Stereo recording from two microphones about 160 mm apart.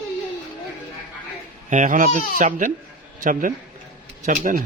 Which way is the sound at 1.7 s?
50° right (ahead or behind).